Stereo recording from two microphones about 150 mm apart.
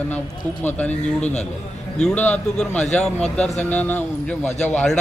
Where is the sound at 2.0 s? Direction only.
5° left (ahead or behind).